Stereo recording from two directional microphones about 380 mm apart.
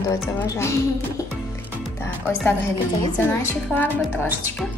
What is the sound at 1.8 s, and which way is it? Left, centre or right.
Music, centre.